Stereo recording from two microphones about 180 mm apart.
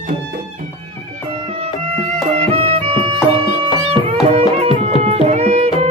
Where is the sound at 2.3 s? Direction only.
35° right (ahead or behind).